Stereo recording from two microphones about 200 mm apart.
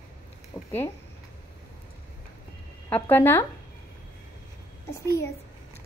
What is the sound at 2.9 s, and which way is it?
Speech, 10° left (ahead or behind).